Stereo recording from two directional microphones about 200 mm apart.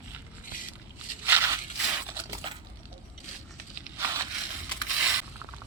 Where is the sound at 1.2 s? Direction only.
10° right (ahead or behind).